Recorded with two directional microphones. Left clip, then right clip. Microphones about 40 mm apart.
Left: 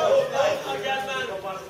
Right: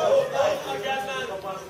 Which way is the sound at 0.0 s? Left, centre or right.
Left.